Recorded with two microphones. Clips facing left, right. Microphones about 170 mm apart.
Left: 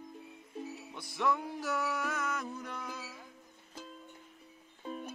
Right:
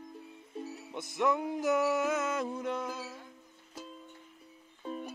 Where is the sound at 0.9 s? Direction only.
20° right (ahead or behind).